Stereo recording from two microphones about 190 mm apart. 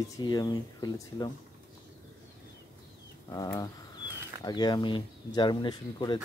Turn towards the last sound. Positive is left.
turn(degrees=25)  # may be behind; listen again after turning